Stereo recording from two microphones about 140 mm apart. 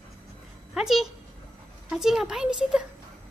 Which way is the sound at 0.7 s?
5° right (ahead or behind).